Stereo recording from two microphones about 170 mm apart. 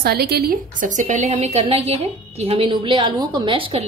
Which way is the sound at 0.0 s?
70° right (ahead or behind).